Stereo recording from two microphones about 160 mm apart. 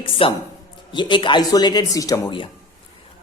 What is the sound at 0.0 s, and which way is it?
Speech, 35° left (ahead or behind).